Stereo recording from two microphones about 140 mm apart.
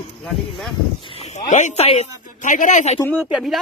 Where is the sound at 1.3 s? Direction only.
60° left (ahead or behind).